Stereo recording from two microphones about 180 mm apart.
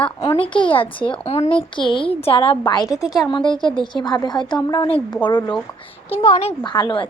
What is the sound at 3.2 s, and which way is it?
Speech, 25° left (ahead or behind).